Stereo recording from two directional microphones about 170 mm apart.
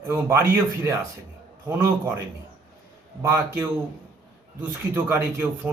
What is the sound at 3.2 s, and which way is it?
Speech, 15° right (ahead or behind).